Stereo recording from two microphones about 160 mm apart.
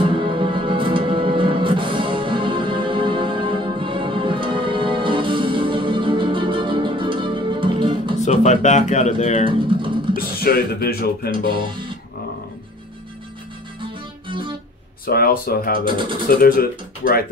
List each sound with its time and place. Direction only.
0.0 s music: 30° right (ahead or behind)
8.3 s speech: 45° left (ahead or behind)
10.1 s speech: 70° left (ahead or behind)
15.0 s speech: 70° left (ahead or behind)
15.8 s speech: 30° right (ahead or behind)
16.3 s speech: 65° left (ahead or behind)